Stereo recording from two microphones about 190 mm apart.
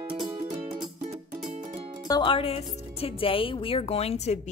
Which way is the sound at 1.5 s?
35° right (ahead or behind).